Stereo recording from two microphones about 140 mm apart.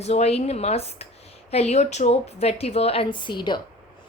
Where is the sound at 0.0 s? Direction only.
50° left (ahead or behind).